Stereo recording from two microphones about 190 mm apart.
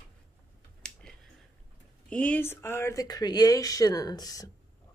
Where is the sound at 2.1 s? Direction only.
10° left (ahead or behind).